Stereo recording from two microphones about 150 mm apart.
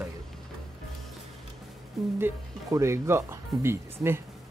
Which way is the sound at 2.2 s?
15° right (ahead or behind).